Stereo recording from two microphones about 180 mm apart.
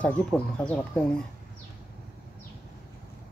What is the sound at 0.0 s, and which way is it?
Speech, 5° left (ahead or behind).